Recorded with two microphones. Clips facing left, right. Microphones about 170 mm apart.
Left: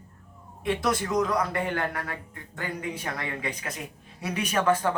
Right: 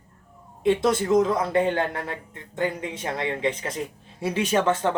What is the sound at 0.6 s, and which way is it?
A man's voice, 25° right (ahead or behind).